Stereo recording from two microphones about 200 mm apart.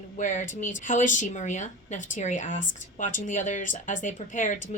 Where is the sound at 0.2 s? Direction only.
40° left (ahead or behind).